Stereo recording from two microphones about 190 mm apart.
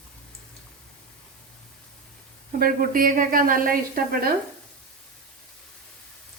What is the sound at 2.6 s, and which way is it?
Speech, 50° right (ahead or behind).